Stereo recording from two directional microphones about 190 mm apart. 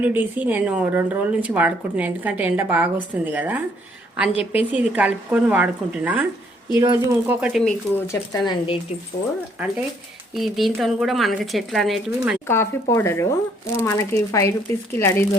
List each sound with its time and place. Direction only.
0.0 s a woman's voice: 10° right (ahead or behind)
4.3 s speech: 30° left (ahead or behind)
4.7 s a woman's voice: 10° right (ahead or behind)
7.6 s speech: 10° left (ahead or behind)
10.3 s speech: centre (ahead or behind)
12.5 s speech: 15° left (ahead or behind)